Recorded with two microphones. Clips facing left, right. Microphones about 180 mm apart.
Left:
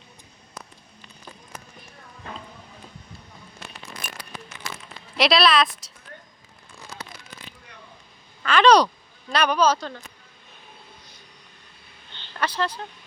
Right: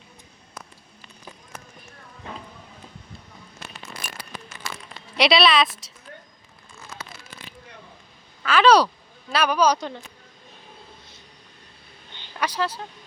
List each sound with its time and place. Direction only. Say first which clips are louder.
5.1 s speech: right 1 dB; centre (ahead or behind)
8.4 s a woman's voice: even; 5° right (ahead or behind)
12.1 s a sound: even; 10° right (ahead or behind)